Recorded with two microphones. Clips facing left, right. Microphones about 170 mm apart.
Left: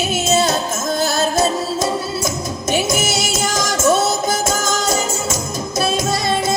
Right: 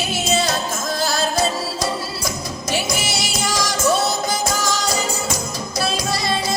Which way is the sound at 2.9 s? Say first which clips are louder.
Left 5 dB; 50° left (ahead or behind).